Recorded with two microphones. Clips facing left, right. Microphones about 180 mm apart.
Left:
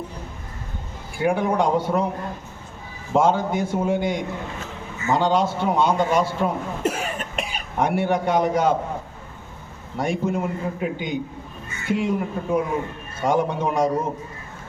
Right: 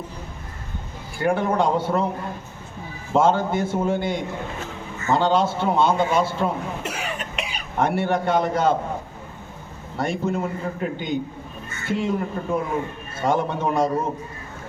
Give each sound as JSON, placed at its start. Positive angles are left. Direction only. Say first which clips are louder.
{"t": 1.2, "sound": "a man's voice", "louder": "even", "side_deg": 10}
{"t": 3.2, "sound": "a man's voice", "louder": "even", "side_deg": 15}
{"t": 6.8, "sound": "cough", "louder": "left 5 dB", "side_deg": 45}
{"t": 7.8, "sound": "a man's voice", "louder": "even", "side_deg": 10}
{"t": 10.0, "sound": "a man's voice", "louder": "left 1 dB", "side_deg": 10}